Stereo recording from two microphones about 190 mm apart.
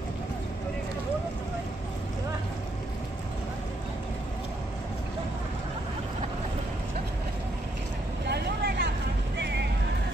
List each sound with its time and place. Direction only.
8.3 s vehicle: 60° right (ahead or behind)
9.4 s music: 65° right (ahead or behind)